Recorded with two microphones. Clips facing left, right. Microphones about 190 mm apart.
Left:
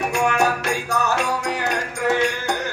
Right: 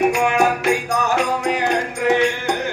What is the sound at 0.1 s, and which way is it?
Music, 15° right (ahead or behind).